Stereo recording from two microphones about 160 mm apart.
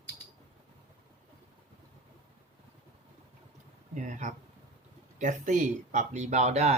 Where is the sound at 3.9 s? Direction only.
50° right (ahead or behind).